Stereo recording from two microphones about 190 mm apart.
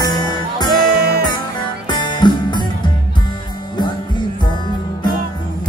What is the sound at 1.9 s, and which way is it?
Music, 25° left (ahead or behind).